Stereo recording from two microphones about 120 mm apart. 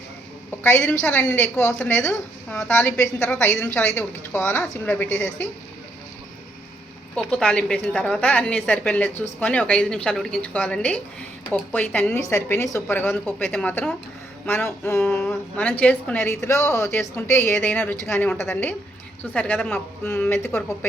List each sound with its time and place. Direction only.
0.7 s a woman's voice: 20° left (ahead or behind)
7.2 s a woman's voice: 5° left (ahead or behind)
14.4 s a woman's voice: 20° left (ahead or behind)